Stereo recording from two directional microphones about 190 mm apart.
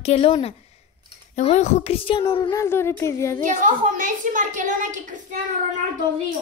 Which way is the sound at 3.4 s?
45° right (ahead or behind).